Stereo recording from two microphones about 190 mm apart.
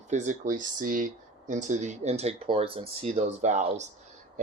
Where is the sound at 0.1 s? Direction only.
40° right (ahead or behind).